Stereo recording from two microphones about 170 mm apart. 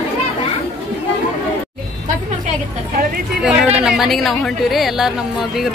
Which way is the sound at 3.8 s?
Centre (ahead or behind).